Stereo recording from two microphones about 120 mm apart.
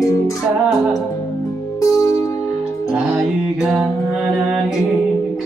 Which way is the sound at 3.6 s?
5° right (ahead or behind).